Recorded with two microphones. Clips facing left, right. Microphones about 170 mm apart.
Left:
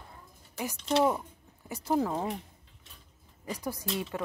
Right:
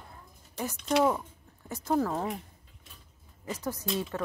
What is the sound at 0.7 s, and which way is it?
Speech, 30° left (ahead or behind).